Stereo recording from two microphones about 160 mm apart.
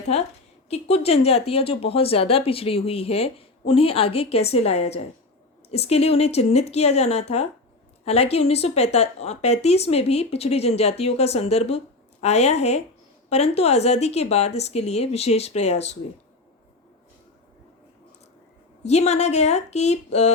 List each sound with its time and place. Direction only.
0.7 s speech: 40° left (ahead or behind)
18.8 s speech: 40° left (ahead or behind)